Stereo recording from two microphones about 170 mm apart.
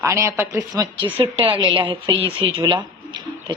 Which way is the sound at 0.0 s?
15° right (ahead or behind).